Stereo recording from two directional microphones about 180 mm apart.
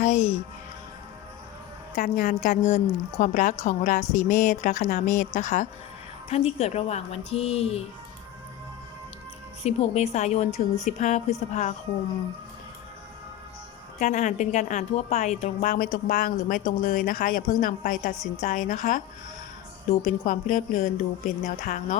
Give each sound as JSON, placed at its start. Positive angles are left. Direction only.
{"t": 0.0, "sound": "speech", "side_deg": 40}
{"t": 2.0, "sound": "a woman's voice", "side_deg": 45}
{"t": 9.6, "sound": "speech", "side_deg": 35}
{"t": 14.0, "sound": "a woman's voice", "side_deg": 40}
{"t": 20.1, "sound": "a woman's voice", "side_deg": 45}